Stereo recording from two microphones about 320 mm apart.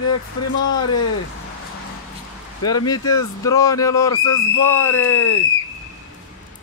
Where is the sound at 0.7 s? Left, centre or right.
Left.